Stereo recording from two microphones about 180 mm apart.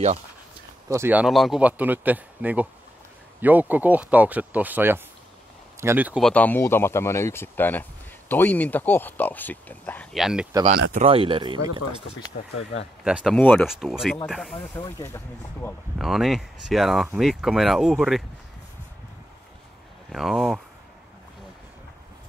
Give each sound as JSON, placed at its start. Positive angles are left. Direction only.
{"t": 0.8, "sound": "speech", "side_deg": -15}
{"t": 6.2, "sound": "speech", "side_deg": 10}
{"t": 10.1, "sound": "speech", "side_deg": -5}
{"t": 10.7, "sound": "speech", "side_deg": -50}
{"t": 11.1, "sound": "speech", "side_deg": -30}
{"t": 12.4, "sound": "speech", "side_deg": 45}
{"t": 13.0, "sound": "speech", "side_deg": 0}
{"t": 14.8, "sound": "speech", "side_deg": 15}
{"t": 16.0, "sound": "speech", "side_deg": 0}
{"t": 20.1, "sound": "speech", "side_deg": 0}